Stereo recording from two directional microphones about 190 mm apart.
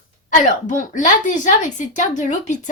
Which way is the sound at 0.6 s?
40° left (ahead or behind).